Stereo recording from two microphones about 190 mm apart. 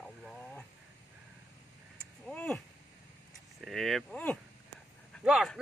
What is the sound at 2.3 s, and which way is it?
A man's voice, 5° left (ahead or behind).